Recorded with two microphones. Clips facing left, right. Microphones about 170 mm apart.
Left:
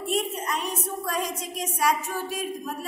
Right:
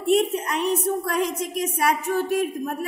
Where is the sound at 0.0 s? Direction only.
65° right (ahead or behind).